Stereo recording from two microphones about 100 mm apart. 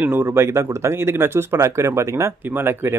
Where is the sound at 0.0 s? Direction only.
20° right (ahead or behind).